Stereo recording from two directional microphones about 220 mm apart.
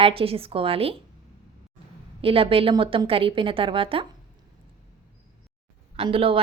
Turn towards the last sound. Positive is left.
turn(degrees=-25)  # may be behind; listen again after turning